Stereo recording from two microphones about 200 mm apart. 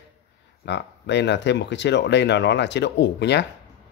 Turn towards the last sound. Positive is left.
turn(degrees=60)  # may be behind; listen again after turning